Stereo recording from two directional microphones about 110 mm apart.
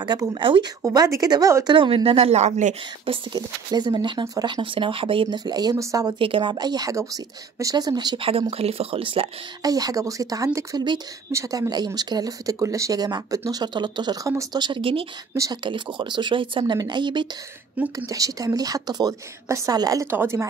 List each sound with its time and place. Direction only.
0.0 s speech: 45° right (ahead or behind)
0.8 s speech: 30° right (ahead or behind)
1.8 s speech: 55° right (ahead or behind); by 2.7 s 90° right
3.1 s speech: 45° right (ahead or behind)
5.4 s speech: 40° right (ahead or behind)
6.1 s speech: 55° right (ahead or behind)
8.2 s speech: 60° right (ahead or behind)
9.6 s speech: 35° right (ahead or behind)
14.2 s speech: 30° right (ahead or behind)
14.6 s speech: 50° right (ahead or behind)
15.3 s speech: 30° right (ahead or behind)
15.6 s speech: 45° right (ahead or behind)
17.9 s speech: 30° right (ahead or behind)
20.1 s a woman's voice: 20° right (ahead or behind)